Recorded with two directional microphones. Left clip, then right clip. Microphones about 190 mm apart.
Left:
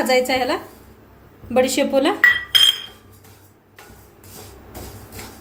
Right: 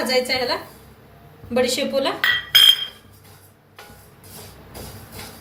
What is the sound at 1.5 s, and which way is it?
Speech, 55° left (ahead or behind).